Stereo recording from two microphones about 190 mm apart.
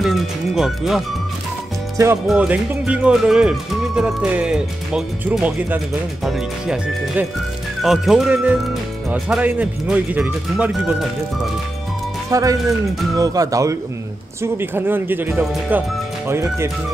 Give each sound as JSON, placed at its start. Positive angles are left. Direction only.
{"t": 0.0, "sound": "speech", "side_deg": 0}
{"t": 2.2, "sound": "speech", "side_deg": -5}
{"t": 12.3, "sound": "speech", "side_deg": -15}